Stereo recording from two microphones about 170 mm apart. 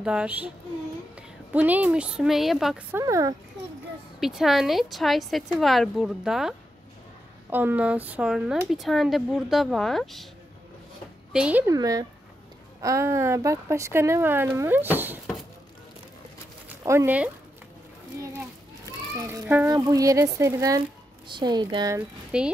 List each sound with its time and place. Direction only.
0.0 s speech: 5° right (ahead or behind)
1.5 s speech: 10° right (ahead or behind)
3.0 s speech: 20° right (ahead or behind)
4.2 s speech: centre (ahead or behind)
11.3 s speech: 10° right (ahead or behind)
11.7 s speech: 20° right (ahead or behind)
16.6 s speech: 15° right (ahead or behind)
19.2 s speech: 10° right (ahead or behind)
19.7 s speech: 20° right (ahead or behind)
22.3 s speech: 5° right (ahead or behind)